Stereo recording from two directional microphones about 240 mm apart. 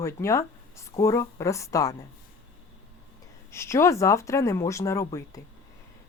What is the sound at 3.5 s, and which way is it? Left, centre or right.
Speech, centre.